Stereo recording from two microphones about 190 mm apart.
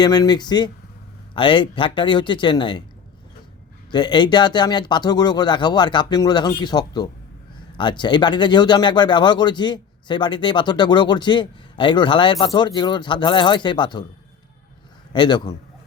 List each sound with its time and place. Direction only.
0.0 s speech: 20° left (ahead or behind)
3.9 s speech: 25° left (ahead or behind)
15.1 s speech: 25° left (ahead or behind)